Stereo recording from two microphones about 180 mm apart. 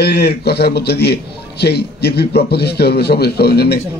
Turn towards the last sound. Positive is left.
turn(degrees=65)  # may be behind; listen again after turning